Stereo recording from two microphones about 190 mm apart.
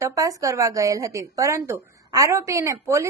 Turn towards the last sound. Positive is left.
turn(degrees=-15)  # may be behind; listen again after turning